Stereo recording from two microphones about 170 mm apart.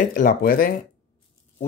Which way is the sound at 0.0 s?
50° left (ahead or behind).